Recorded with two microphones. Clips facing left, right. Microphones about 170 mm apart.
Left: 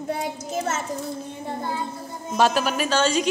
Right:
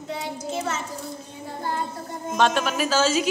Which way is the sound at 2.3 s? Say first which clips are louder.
Left 1 dB; 5° left (ahead or behind).